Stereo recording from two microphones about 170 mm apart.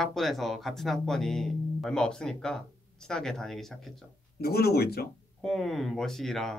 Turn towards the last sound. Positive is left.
turn(degrees=0)  # may be behind; listen again after turning